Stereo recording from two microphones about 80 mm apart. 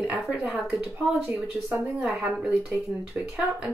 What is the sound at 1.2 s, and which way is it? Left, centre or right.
Speech, centre.